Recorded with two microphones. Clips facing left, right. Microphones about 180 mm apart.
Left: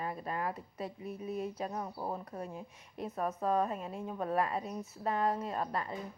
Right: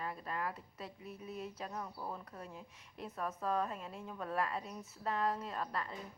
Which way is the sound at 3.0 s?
25° left (ahead or behind).